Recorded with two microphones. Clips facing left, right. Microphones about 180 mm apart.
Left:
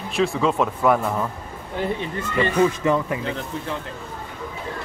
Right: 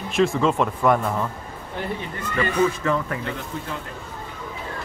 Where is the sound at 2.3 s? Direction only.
15° left (ahead or behind).